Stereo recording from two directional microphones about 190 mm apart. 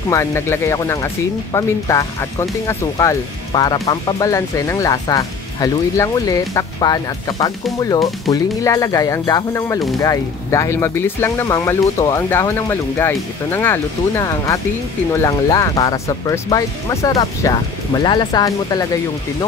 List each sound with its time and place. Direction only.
0.1 s speech: 15° left (ahead or behind)